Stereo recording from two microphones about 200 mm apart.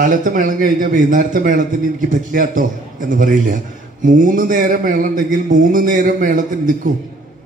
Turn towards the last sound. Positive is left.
turn(degrees=-40)  # may be behind; listen again after turning